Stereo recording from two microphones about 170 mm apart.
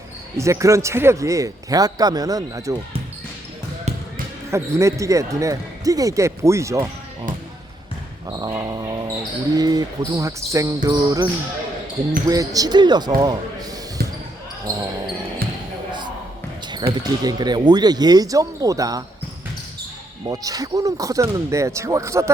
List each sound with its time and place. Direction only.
0.3 s a man's voice: 15° right (ahead or behind)
4.5 s a man's voice: 15° right (ahead or behind)
8.3 s a man's voice: 20° right (ahead or behind)
12.3 s a man's voice: 20° right (ahead or behind)
14.0 s basketball bounce: 65° right (ahead or behind)
14.7 s basketball bounce: 25° right (ahead or behind)
16.7 s a man's voice: 25° right (ahead or behind)
20.2 s a man's voice: 20° right (ahead or behind)